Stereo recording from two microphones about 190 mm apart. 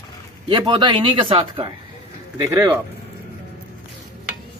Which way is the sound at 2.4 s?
15° right (ahead or behind).